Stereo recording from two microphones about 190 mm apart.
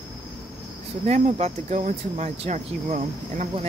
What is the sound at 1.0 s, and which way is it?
Speech, 35° right (ahead or behind).